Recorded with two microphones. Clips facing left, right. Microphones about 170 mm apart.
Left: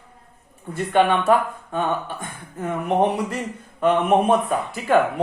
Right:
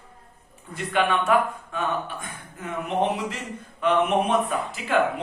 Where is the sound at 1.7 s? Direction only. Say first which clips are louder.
Left 4 dB; 45° left (ahead or behind).